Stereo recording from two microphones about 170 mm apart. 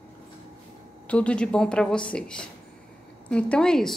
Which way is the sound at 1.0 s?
5° left (ahead or behind).